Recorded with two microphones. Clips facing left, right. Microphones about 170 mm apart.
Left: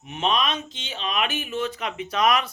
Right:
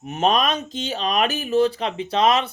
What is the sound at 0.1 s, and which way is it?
Speech, 45° right (ahead or behind).